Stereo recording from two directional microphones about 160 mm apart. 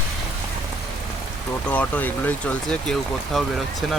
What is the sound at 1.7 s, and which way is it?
Speech, 10° left (ahead or behind).